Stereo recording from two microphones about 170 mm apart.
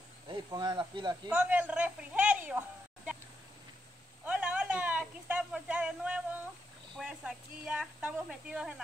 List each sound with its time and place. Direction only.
0.3 s speech: 25° right (ahead or behind)
1.3 s a man's voice: 10° right (ahead or behind)
4.2 s a sound: 10° right (ahead or behind)
7.0 s speech: 5° right (ahead or behind)